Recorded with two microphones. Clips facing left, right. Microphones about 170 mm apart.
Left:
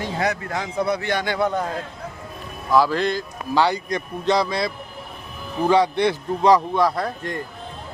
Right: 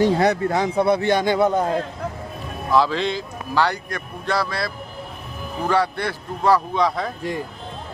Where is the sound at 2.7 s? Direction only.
5° left (ahead or behind).